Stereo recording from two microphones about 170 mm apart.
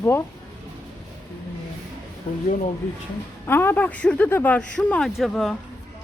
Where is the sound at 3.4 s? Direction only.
15° left (ahead or behind).